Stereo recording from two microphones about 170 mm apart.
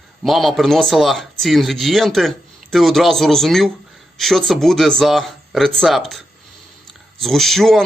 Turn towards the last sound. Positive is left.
turn(degrees=0)  # may be behind; listen again after turning